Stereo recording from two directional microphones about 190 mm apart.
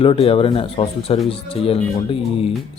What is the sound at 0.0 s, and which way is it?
Speech, 30° left (ahead or behind).